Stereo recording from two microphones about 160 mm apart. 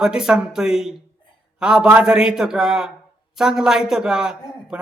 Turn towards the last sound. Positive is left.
turn(degrees=-5)  # may be behind; listen again after turning